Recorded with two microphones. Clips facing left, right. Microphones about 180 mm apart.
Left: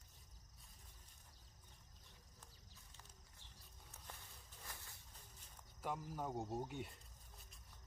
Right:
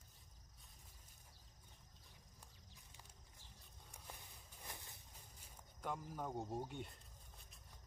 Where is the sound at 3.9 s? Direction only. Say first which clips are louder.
Right 2 dB; 15° right (ahead or behind).